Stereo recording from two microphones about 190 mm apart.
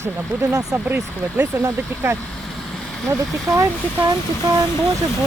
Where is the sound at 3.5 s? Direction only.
15° right (ahead or behind).